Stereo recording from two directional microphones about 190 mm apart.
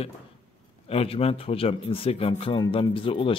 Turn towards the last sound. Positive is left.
turn(degrees=30)  # may be behind; listen again after turning